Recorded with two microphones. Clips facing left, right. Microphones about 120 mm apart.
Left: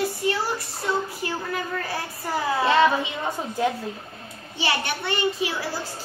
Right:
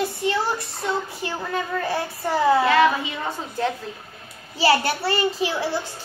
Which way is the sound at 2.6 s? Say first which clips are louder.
Right 1 dB; 25° left (ahead or behind).